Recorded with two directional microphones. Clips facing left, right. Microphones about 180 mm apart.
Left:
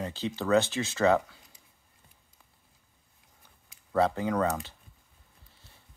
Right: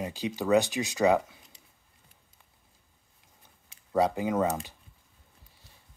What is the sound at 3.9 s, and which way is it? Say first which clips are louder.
Speech: even; 15° right (ahead or behind).